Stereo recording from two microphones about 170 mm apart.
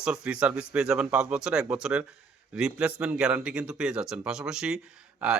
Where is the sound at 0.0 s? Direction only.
5° right (ahead or behind).